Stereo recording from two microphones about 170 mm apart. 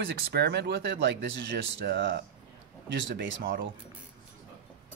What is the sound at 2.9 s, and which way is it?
Speech, 90° right.